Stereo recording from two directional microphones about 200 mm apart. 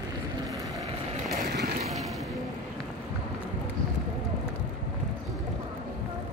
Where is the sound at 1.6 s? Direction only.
35° right (ahead or behind).